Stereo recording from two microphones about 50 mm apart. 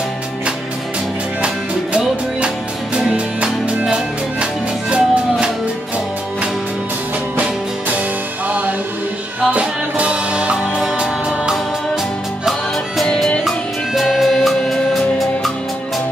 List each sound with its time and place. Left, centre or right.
2.0 s music: right
8.5 s music: right
13.4 s music: centre